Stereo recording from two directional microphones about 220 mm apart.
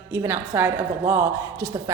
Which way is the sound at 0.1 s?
10° right (ahead or behind).